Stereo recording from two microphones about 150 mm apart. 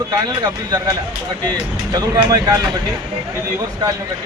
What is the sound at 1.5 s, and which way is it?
Speech, 25° right (ahead or behind).